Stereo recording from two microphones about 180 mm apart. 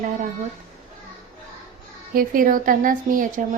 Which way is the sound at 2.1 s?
50° right (ahead or behind).